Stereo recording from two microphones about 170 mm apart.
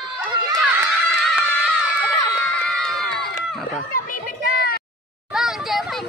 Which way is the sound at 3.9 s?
55° left (ahead or behind).